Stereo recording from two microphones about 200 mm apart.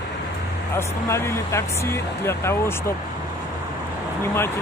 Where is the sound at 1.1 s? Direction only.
15° left (ahead or behind).